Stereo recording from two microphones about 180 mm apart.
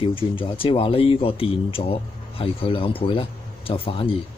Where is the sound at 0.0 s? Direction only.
30° left (ahead or behind).